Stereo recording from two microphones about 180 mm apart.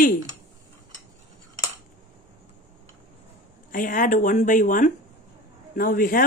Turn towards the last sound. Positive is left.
turn(degrees=50)  # may be behind; listen again after turning